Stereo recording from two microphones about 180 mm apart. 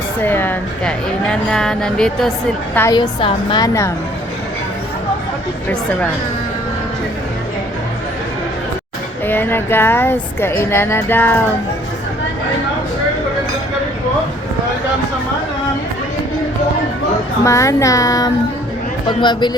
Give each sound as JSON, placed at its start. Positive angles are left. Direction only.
{"t": 0.2, "sound": "speech", "side_deg": 10}
{"t": 2.7, "sound": "a woman's voice", "side_deg": 20}
{"t": 9.2, "sound": "speech", "side_deg": 10}
{"t": 17.4, "sound": "a woman's voice", "side_deg": 15}